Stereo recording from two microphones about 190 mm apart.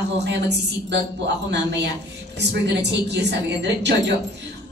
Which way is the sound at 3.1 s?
65° right (ahead or behind).